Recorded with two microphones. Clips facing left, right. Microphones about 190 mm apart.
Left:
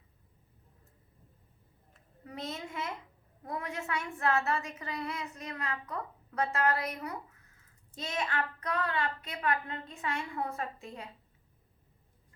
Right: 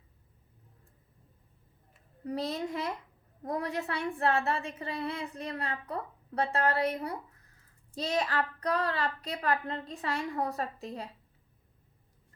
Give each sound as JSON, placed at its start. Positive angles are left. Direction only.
{"t": 2.2, "sound": "a woman's voice", "side_deg": -35}